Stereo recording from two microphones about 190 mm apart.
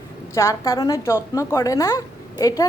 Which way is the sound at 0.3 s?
15° left (ahead or behind).